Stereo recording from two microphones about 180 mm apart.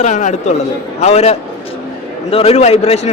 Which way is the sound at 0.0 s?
45° left (ahead or behind).